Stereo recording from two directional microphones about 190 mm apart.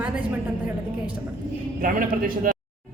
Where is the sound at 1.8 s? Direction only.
45° right (ahead or behind).